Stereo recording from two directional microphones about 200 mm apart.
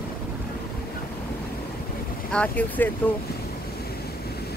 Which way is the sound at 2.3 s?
5° left (ahead or behind).